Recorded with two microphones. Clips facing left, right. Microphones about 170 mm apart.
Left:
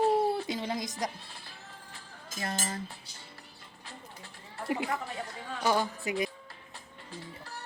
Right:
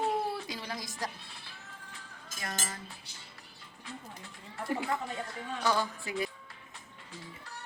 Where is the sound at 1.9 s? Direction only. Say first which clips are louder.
Left 7 dB; 30° left (ahead or behind).